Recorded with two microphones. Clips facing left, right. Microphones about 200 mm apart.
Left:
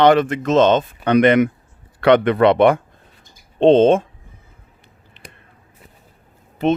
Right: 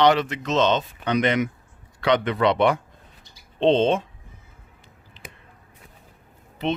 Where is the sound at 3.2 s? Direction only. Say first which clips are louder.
Left 7 dB; 50° left (ahead or behind).